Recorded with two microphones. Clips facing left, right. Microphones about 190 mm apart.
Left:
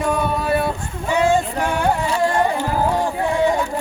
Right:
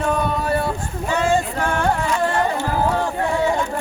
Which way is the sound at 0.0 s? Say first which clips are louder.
Left 1 dB; 10° left (ahead or behind).